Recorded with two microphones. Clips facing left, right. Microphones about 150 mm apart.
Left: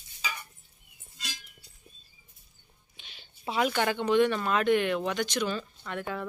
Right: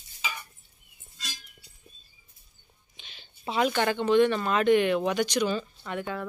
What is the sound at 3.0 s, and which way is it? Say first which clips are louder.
Speech: right 1 dB; 5° left (ahead or behind).